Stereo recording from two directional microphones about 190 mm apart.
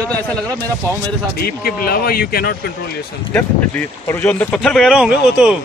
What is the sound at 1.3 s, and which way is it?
Speech, 55° left (ahead or behind).